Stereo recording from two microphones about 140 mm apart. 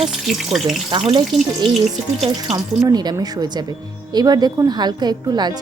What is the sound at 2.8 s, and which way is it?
A woman's voice, 30° right (ahead or behind).